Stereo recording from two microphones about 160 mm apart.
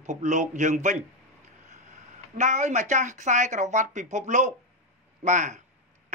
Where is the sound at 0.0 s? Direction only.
50° right (ahead or behind).